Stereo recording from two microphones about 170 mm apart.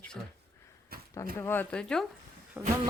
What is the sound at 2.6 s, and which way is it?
Speech, 10° right (ahead or behind).